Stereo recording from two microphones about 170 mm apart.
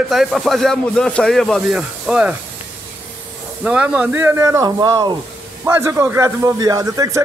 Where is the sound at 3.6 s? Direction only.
5° right (ahead or behind).